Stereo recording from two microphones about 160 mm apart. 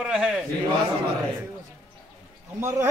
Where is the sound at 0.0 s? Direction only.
5° right (ahead or behind).